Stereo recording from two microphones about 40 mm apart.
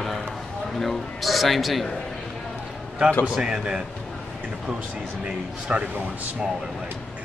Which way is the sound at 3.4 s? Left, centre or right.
Centre.